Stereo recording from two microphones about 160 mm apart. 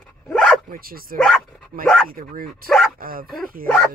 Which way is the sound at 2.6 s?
Centre (ahead or behind).